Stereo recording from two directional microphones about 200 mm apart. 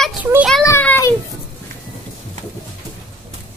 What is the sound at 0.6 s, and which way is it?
Speech, 10° left (ahead or behind).